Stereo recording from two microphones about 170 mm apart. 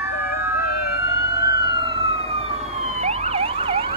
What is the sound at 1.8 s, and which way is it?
Emergency vehicle, 35° right (ahead or behind).